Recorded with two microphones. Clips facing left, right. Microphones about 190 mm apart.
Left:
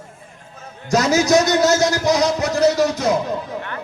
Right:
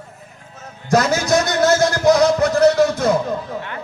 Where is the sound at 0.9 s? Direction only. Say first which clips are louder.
Left 1 dB; 55° right (ahead or behind).